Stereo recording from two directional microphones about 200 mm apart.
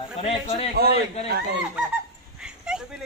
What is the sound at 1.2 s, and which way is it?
Speech, 50° right (ahead or behind).